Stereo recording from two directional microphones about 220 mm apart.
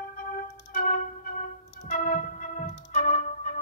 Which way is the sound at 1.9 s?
35° left (ahead or behind).